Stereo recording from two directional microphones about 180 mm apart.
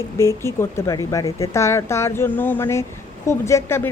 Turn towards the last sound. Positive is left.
turn(degrees=15)  # may be behind; listen again after turning